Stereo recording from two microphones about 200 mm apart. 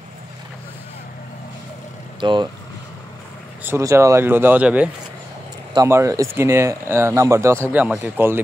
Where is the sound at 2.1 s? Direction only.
25° right (ahead or behind).